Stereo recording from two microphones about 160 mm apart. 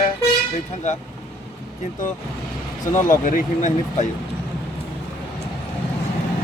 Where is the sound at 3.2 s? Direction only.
55° left (ahead or behind).